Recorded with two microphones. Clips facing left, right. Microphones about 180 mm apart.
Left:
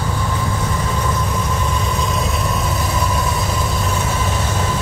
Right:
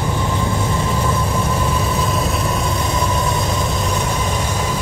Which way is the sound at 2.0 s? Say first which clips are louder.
Right 1 dB; centre (ahead or behind).